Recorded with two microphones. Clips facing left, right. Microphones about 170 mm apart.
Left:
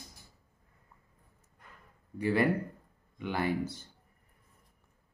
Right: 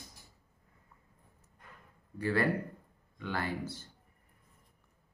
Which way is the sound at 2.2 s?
15° left (ahead or behind).